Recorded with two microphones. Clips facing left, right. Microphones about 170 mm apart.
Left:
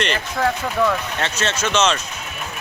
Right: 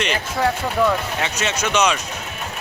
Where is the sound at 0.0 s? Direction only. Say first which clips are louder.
Even; 5° right (ahead or behind).